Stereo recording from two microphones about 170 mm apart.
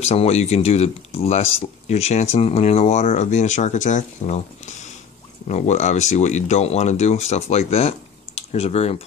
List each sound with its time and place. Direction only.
0.0 s speech: 40° left (ahead or behind)